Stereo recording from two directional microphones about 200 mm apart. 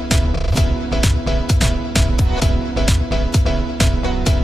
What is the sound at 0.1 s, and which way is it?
Music, centre (ahead or behind).